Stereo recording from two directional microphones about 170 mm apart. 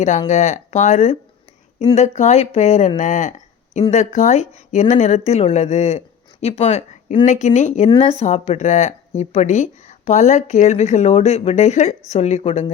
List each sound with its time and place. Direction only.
0.3 s speech: 40° left (ahead or behind)
7.9 s a woman's voice: 25° left (ahead or behind)
8.2 s speech: 40° left (ahead or behind)